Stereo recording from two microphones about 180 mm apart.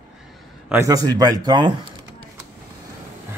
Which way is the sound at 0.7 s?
15° right (ahead or behind).